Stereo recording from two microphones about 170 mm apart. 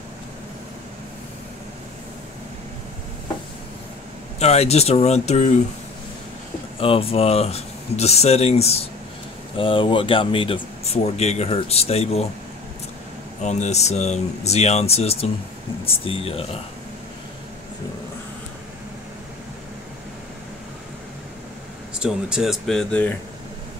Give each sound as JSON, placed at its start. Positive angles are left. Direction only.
{"t": 4.4, "sound": "speech", "side_deg": 40}
{"t": 6.8, "sound": "speech", "side_deg": 35}
{"t": 13.4, "sound": "speech", "side_deg": 45}
{"t": 22.0, "sound": "speech", "side_deg": -5}